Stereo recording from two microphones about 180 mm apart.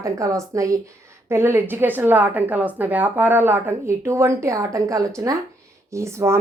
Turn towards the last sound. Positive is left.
turn(degrees=-15)  # may be behind; listen again after turning